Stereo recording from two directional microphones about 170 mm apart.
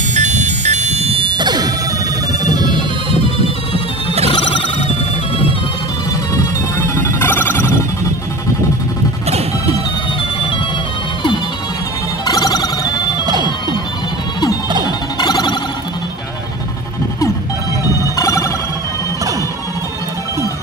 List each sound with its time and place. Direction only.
0.1 s music: 40° right (ahead or behind)
4.3 s music: 30° left (ahead or behind)
7.0 s music: 15° left (ahead or behind)
12.3 s music: 20° left (ahead or behind)
13.2 s music: 25° right (ahead or behind)
14.9 s music: 25° left (ahead or behind)
18.1 s ringtone: 20° left (ahead or behind)